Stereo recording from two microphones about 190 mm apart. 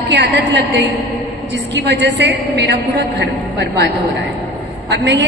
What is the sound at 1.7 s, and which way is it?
A man's voice, 65° right (ahead or behind).